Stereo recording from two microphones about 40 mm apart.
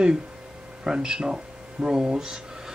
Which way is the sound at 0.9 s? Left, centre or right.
Centre.